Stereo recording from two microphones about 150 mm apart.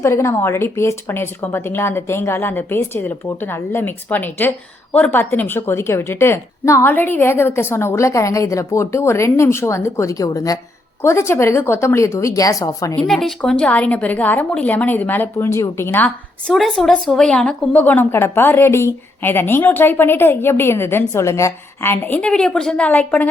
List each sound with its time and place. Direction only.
0.0 s a woman's voice: 20° left (ahead or behind)
13.0 s a woman's voice: centre (ahead or behind)
16.5 s a woman's voice: centre (ahead or behind)